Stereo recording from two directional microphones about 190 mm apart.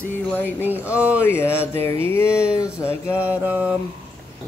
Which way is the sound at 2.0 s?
15° left (ahead or behind).